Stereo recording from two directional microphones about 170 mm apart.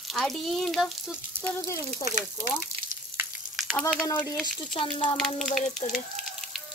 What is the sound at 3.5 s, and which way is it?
Speech, centre (ahead or behind).